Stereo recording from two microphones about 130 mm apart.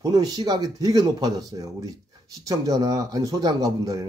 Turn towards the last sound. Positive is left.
turn(degrees=-25)  # may be behind; listen again after turning